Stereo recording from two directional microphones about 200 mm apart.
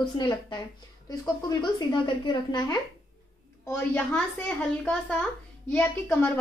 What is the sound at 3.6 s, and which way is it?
Speech, 5° left (ahead or behind).